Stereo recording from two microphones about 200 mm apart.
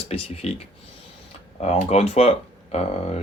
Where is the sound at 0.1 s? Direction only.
35° left (ahead or behind).